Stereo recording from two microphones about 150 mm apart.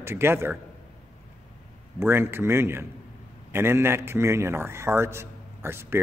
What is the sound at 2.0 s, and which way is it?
A man's voice, 15° right (ahead or behind).